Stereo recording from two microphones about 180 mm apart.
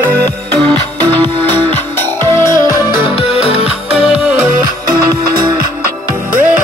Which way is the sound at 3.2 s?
35° left (ahead or behind).